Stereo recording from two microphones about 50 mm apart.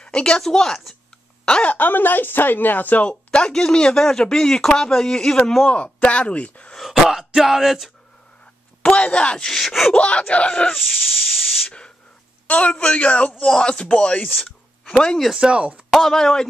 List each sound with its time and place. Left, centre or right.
0.0 s speech: centre
1.5 s speech: left
1.8 s speech: left
3.3 s speech: centre
5.7 s speech: left
6.8 s speech: centre
8.8 s speech: left
9.5 s speech: centre
9.9 s speech: left
10.7 s speech: centre
12.4 s speech: left
15.3 s speech: centre
15.9 s speech: centre